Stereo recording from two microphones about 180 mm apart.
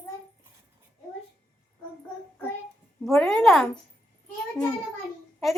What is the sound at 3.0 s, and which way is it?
Speech, centre (ahead or behind).